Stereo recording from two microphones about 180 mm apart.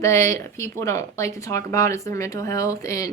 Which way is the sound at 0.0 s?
15° left (ahead or behind).